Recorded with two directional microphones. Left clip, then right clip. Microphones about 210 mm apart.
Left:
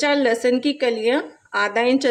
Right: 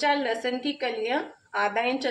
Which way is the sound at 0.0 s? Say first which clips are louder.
Left 7 dB; 55° left (ahead or behind).